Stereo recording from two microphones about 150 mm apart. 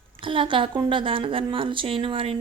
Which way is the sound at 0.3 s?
35° right (ahead or behind).